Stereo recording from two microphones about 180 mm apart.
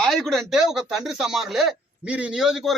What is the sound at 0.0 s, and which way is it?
Speech, centre (ahead or behind).